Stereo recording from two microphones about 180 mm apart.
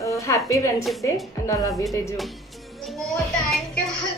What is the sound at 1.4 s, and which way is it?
Speech, 15° left (ahead or behind).